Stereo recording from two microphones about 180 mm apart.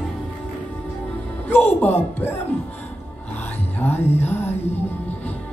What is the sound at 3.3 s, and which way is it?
Music, 10° left (ahead or behind).